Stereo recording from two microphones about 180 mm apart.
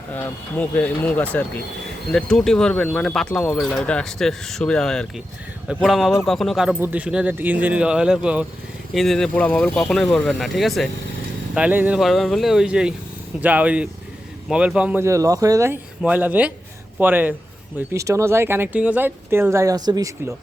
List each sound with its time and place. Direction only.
0.2 s speech: 10° left (ahead or behind); by 20.3 s 20° right (ahead or behind)